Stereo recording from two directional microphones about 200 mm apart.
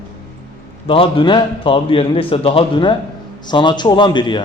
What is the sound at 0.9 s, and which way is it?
A man's voice, 25° left (ahead or behind).